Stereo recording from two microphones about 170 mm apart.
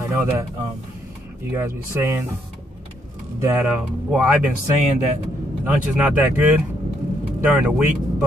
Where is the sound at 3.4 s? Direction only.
10° right (ahead or behind).